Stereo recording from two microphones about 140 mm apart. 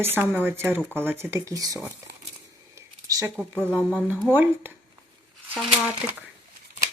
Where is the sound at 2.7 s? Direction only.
20° right (ahead or behind).